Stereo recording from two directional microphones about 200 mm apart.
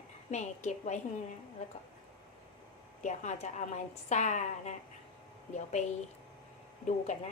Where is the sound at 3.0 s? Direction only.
35° left (ahead or behind).